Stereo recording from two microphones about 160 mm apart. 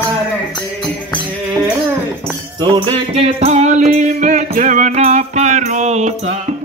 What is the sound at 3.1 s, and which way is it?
Music, 40° right (ahead or behind).